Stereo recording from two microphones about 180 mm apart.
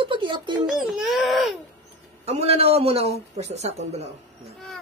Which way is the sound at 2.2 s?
35° right (ahead or behind).